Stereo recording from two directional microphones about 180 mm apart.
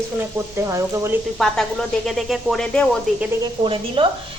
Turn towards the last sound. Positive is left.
turn(degrees=-30)  # may be behind; listen again after turning